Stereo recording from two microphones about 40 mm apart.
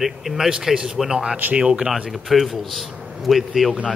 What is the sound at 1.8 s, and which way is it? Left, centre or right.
A man's voice, centre.